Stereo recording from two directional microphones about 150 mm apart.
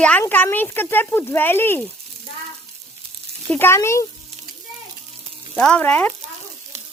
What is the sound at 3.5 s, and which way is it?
Speech, 15° left (ahead or behind).